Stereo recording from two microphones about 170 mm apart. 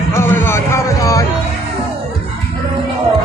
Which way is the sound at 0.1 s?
15° left (ahead or behind).